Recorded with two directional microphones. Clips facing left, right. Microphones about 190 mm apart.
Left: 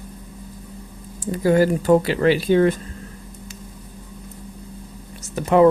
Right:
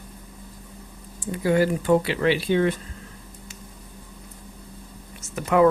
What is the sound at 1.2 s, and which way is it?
Speech, 40° left (ahead or behind).